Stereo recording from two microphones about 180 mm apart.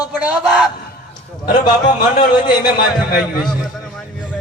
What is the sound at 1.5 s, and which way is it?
A man's voice, 25° left (ahead or behind).